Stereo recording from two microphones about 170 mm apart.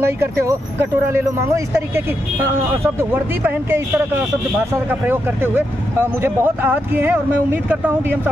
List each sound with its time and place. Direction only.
0.0 s speech: 15° right (ahead or behind)